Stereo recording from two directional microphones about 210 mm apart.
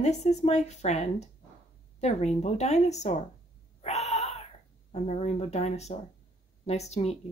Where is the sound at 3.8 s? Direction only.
30° left (ahead or behind).